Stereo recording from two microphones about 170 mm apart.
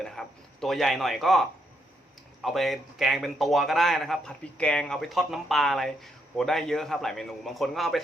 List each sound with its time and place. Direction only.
0.0 s speech: centre (ahead or behind)